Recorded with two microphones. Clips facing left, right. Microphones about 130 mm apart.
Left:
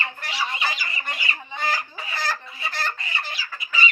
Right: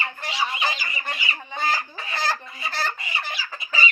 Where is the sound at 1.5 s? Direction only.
30° right (ahead or behind).